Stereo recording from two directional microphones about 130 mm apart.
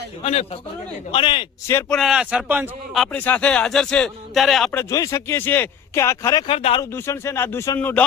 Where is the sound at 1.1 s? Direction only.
40° left (ahead or behind).